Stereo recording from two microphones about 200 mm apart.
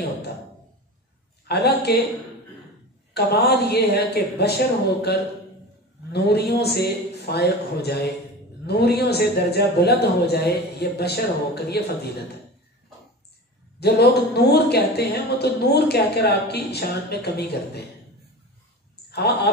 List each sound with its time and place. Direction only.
1.5 s a woman's voice: 55° left (ahead or behind)
3.2 s a man's voice: 55° left (ahead or behind)
6.1 s a woman's voice: 55° left (ahead or behind)
13.7 s a woman's voice: 55° left (ahead or behind)
19.0 s speech: 55° left (ahead or behind)